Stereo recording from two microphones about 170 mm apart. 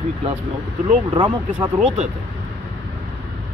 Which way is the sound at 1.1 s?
25° right (ahead or behind).